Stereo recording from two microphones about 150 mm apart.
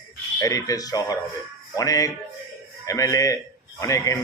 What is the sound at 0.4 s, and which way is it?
A man's voice, 25° left (ahead or behind).